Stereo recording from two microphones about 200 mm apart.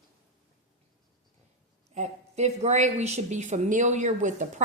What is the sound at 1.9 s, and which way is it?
Speech, 35° right (ahead or behind).